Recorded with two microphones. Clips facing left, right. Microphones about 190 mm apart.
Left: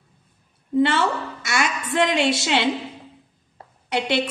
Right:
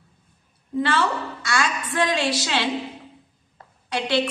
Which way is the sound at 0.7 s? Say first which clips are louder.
Left 3 dB; 25° left (ahead or behind).